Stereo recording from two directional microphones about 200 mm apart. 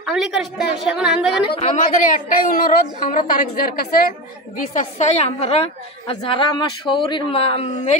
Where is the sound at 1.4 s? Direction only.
30° left (ahead or behind).